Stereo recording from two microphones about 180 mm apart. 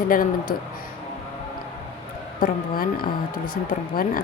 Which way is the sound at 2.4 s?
50° left (ahead or behind).